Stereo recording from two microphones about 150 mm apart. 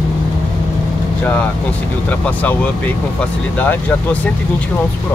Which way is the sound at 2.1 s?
10° left (ahead or behind).